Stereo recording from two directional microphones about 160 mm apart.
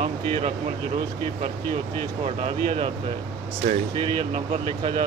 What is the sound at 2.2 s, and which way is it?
Speech, 40° right (ahead or behind).